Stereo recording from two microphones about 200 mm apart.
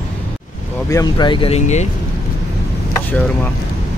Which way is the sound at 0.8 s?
20° left (ahead or behind).